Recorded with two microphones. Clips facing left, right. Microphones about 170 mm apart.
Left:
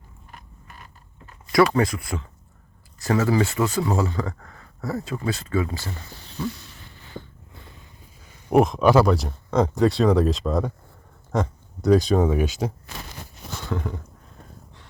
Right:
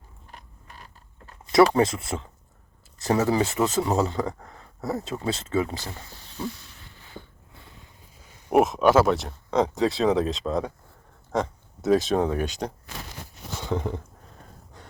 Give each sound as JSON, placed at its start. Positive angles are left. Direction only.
{"t": 1.5, "sound": "speech", "side_deg": -25}
{"t": 8.4, "sound": "speech", "side_deg": -5}
{"t": 13.7, "sound": "speech", "side_deg": -20}